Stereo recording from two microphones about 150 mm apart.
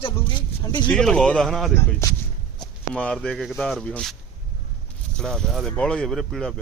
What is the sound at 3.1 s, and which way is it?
Speech, centre (ahead or behind).